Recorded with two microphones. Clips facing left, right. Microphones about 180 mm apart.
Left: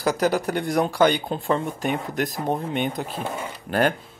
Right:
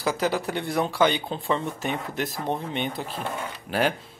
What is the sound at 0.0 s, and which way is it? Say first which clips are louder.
Speech: left 4 dB; 45° left (ahead or behind).